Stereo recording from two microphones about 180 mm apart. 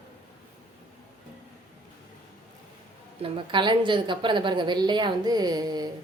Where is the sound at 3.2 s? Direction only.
30° right (ahead or behind).